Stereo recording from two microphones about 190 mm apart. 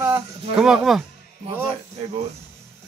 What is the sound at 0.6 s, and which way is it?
Speech, centre (ahead or behind).